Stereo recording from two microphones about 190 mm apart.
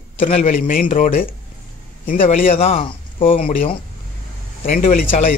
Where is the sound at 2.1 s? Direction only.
45° left (ahead or behind).